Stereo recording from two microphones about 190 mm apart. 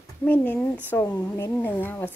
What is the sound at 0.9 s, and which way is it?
A woman's voice, 15° left (ahead or behind).